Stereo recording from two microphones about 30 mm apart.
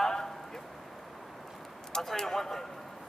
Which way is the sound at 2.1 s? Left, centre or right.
Centre.